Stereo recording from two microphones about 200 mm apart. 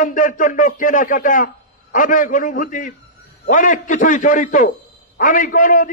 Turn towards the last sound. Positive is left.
turn(degrees=40)  # may be behind; listen again after turning